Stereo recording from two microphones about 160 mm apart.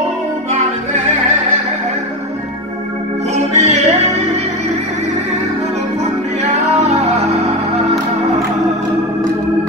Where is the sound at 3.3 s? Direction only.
45° right (ahead or behind).